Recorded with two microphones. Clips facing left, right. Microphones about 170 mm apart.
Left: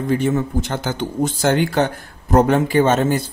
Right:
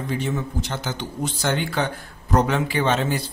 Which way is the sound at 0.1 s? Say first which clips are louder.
Left 8 dB; 50° left (ahead or behind).